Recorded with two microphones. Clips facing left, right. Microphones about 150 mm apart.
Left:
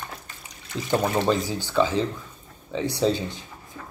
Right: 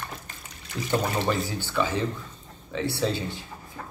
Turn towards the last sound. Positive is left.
turn(degrees=15)  # may be behind; listen again after turning